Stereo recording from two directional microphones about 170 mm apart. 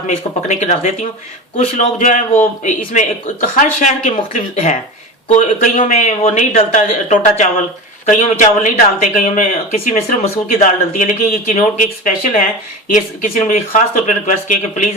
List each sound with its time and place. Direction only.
0.4 s speech: 45° left (ahead or behind)